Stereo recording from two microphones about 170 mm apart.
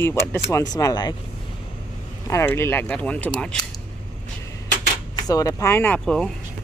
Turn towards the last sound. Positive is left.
turn(degrees=5)  # may be behind; listen again after turning